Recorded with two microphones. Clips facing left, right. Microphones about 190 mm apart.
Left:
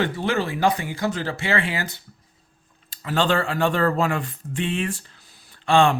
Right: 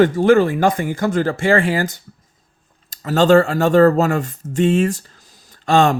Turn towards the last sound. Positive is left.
turn(degrees=-40)  # may be behind; listen again after turning